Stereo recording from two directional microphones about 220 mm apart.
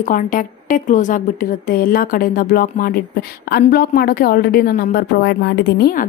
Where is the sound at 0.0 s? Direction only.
35° left (ahead or behind).